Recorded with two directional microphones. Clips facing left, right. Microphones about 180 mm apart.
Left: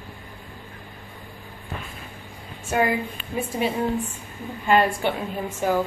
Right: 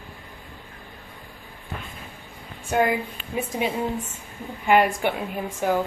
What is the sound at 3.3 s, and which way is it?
A woman's voice, 15° right (ahead or behind).